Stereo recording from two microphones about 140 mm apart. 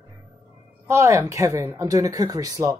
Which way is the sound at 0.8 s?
20° right (ahead or behind).